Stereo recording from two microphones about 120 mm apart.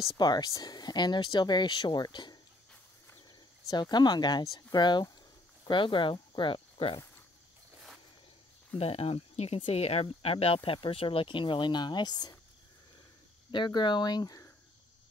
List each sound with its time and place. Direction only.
0.2 s speech: 35° left (ahead or behind)
3.7 s speech: 35° left (ahead or behind)
8.7 s speech: 55° left (ahead or behind); by 12.4 s 35° left (ahead or behind)
13.5 s speech: 40° left (ahead or behind)